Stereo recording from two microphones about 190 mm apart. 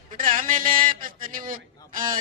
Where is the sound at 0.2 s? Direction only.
45° right (ahead or behind).